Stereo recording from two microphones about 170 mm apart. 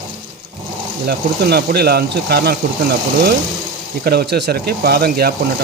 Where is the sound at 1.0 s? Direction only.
70° right (ahead or behind).